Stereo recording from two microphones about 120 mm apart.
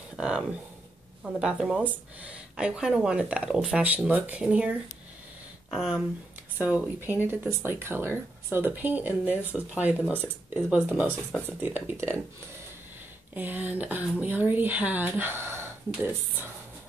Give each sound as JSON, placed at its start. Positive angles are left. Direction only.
{"t": 0.1, "sound": "speech", "side_deg": -5}
{"t": 6.6, "sound": "speech", "side_deg": -15}
{"t": 11.1, "sound": "speech", "side_deg": 10}
{"t": 11.6, "sound": "speech", "side_deg": -15}
{"t": 13.3, "sound": "speech", "side_deg": -15}